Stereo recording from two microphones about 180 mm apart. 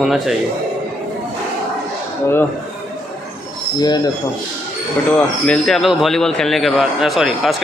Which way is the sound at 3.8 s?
20° left (ahead or behind).